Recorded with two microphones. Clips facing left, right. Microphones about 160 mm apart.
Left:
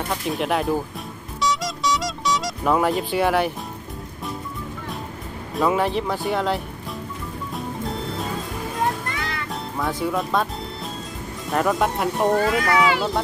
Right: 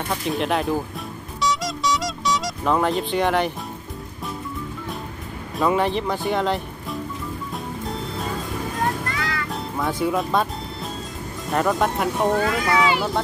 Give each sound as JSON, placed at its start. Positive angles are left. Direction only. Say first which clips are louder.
{"t": 0.1, "sound": "speech", "louder": "right 1 dB", "side_deg": 5}
{"t": 1.4, "sound": "music", "louder": "even", "side_deg": 0}
{"t": 5.6, "sound": "speech", "louder": "even", "side_deg": 5}
{"t": 9.1, "sound": "music", "louder": "right 2 dB", "side_deg": 25}
{"t": 9.5, "sound": "music", "louder": "left 2 dB", "side_deg": 0}
{"t": 11.5, "sound": "speech", "louder": "even", "side_deg": 0}
{"t": 12.6, "sound": "speech", "louder": "even", "side_deg": -20}